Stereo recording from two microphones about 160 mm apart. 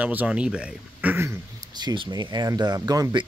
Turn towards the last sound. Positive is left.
turn(degrees=-25)  # may be behind; listen again after turning